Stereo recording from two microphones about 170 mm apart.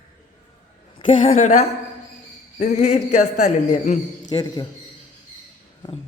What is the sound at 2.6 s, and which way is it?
A man's voice, 40° left (ahead or behind).